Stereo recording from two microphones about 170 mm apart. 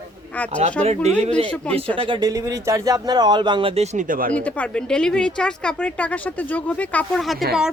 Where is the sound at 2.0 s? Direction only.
25° right (ahead or behind).